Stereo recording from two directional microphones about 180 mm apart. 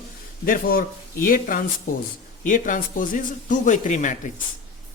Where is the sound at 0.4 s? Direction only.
50° left (ahead or behind).